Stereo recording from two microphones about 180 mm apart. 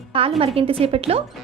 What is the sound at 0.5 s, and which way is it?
Speech, 30° right (ahead or behind).